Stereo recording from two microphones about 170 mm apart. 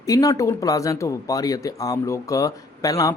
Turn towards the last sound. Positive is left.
turn(degrees=20)  # may be behind; listen again after turning